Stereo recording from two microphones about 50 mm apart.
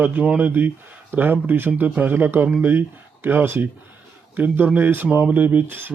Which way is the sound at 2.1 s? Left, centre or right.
Right.